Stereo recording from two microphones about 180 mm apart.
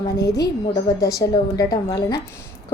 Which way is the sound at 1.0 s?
20° left (ahead or behind).